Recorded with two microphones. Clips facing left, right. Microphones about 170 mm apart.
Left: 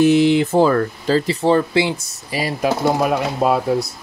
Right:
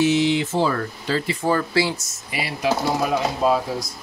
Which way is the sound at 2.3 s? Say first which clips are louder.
Left 4 dB; 40° left (ahead or behind).